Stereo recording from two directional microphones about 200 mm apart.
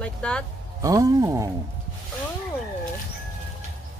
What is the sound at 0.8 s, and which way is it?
Speech, 15° right (ahead or behind).